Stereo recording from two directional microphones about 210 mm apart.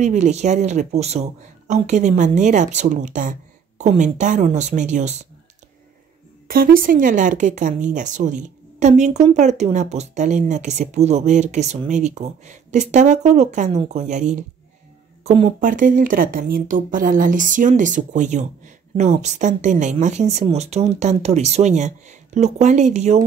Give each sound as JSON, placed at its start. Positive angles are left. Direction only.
{"t": 0.0, "sound": "speech", "side_deg": -35}
{"t": 6.4, "sound": "speech", "side_deg": -45}
{"t": 15.6, "sound": "speech", "side_deg": -40}